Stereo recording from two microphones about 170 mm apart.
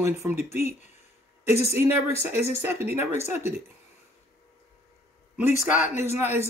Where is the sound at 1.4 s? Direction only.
40° left (ahead or behind).